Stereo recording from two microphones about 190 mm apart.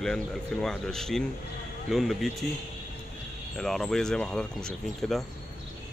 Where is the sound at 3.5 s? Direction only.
Centre (ahead or behind).